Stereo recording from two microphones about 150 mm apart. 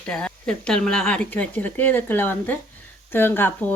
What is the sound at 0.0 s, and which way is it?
Speech, 5° left (ahead or behind).